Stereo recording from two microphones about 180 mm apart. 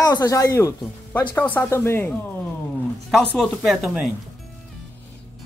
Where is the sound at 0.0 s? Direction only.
20° left (ahead or behind).